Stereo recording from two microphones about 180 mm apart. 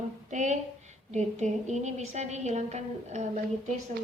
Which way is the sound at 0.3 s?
40° right (ahead or behind).